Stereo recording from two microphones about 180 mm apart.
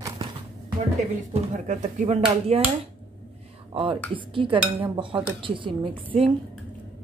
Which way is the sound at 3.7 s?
30° right (ahead or behind).